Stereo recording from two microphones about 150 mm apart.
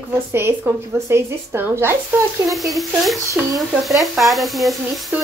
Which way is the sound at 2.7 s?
Centre (ahead or behind).